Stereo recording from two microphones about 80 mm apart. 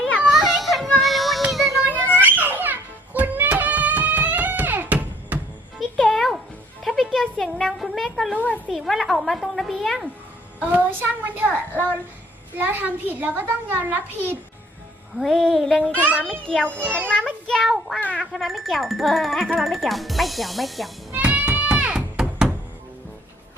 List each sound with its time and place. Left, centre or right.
0.3 s music: centre
1.5 s child singing: centre
2.1 s music: right
6.0 s music: centre
8.7 s a woman's voice: centre
10.7 s a child's voice: right
15.2 s speech: centre
16.0 s a child's voice: right
16.2 s a child's voice: centre
17.5 s child singing: centre
18.0 s a sound: centre
18.3 s speech: centre
21.1 s music: right